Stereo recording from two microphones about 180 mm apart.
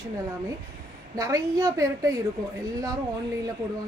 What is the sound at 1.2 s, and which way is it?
A woman's voice, 20° right (ahead or behind).